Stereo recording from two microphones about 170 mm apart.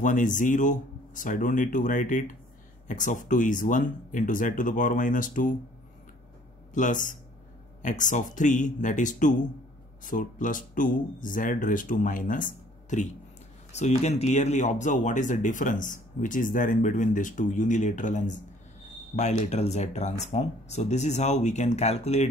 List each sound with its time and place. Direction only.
0.0 s speech: 50° left (ahead or behind)
6.7 s speech: 50° left (ahead or behind)